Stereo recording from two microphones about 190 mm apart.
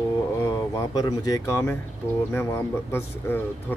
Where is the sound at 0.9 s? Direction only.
20° left (ahead or behind).